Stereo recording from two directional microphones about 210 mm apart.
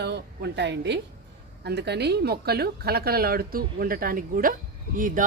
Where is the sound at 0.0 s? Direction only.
55° right (ahead or behind).